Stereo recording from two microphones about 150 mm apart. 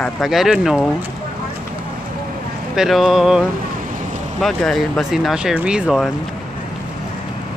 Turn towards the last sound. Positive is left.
turn(degrees=0)  # may be behind; listen again after turning